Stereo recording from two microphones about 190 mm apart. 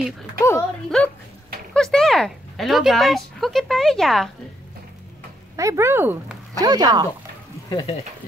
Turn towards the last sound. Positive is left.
turn(degrees=20)  # may be behind; listen again after turning